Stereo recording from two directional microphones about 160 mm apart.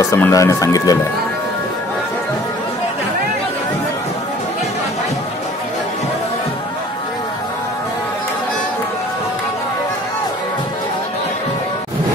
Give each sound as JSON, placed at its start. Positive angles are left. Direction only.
{"t": 0.0, "sound": "speech", "side_deg": 15}